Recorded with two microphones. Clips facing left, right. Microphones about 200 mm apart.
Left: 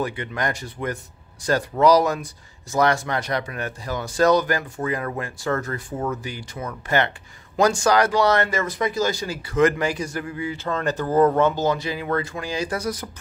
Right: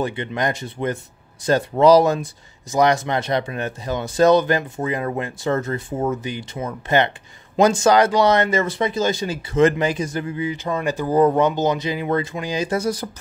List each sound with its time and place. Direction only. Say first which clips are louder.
0.0 s speech: right 3 dB; 25° right (ahead or behind)